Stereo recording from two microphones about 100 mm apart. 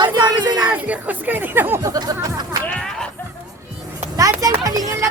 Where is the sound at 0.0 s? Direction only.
45° right (ahead or behind).